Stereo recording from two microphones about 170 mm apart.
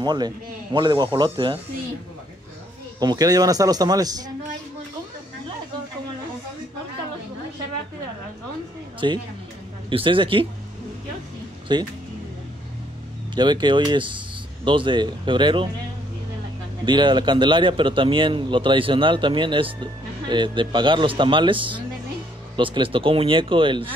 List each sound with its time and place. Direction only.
0.0 s a man's voice: 25° right (ahead or behind)
3.0 s a man's voice: 25° right (ahead or behind)
9.0 s a man's voice: 25° right (ahead or behind)
11.7 s a man's voice: 25° right (ahead or behind)
13.3 s a man's voice: 25° right (ahead or behind)
16.8 s a man's voice: 25° right (ahead or behind)